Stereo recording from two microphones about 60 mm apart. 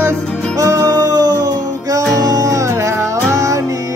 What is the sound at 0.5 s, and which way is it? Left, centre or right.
Music, right.